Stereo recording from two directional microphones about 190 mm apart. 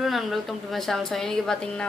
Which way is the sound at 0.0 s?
Centre (ahead or behind).